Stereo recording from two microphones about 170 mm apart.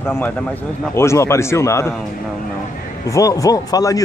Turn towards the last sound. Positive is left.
turn(degrees=20)  # may be behind; listen again after turning